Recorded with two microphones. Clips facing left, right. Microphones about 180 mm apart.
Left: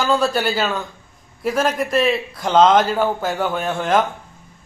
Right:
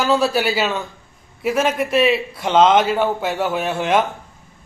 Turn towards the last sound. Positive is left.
turn(degrees=-5)  # may be behind; listen again after turning